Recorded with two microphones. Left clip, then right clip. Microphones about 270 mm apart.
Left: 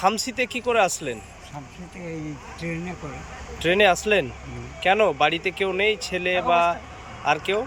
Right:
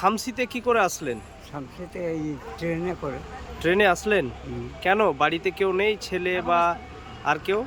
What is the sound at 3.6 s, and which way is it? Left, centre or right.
Speech, centre.